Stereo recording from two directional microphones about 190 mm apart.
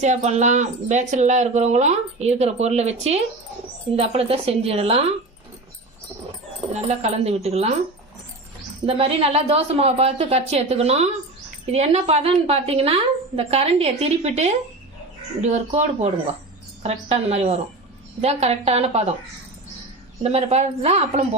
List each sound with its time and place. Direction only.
0.0 s speech: 35° right (ahead or behind)
6.7 s speech: 35° right (ahead or behind)
8.9 s speech: 30° right (ahead or behind)
20.2 s speech: 35° right (ahead or behind)